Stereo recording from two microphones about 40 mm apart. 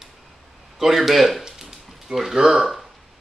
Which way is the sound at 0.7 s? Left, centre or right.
Centre.